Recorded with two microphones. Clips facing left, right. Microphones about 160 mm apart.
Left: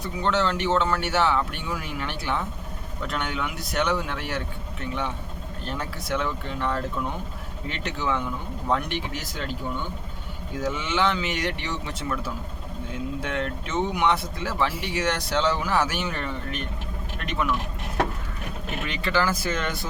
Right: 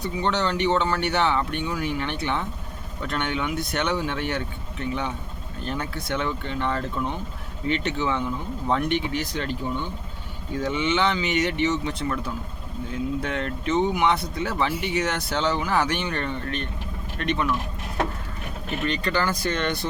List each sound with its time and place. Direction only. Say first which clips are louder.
0.0 s speech: even; centre (ahead or behind)
18.9 s speech: even; 5° left (ahead or behind)